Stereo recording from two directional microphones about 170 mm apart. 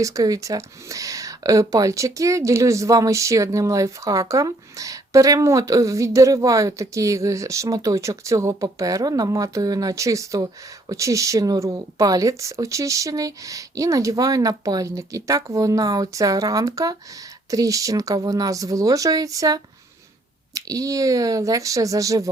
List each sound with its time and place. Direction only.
0.0 s speech: 20° right (ahead or behind)